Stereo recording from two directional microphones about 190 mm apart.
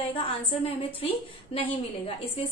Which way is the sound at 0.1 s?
30° left (ahead or behind).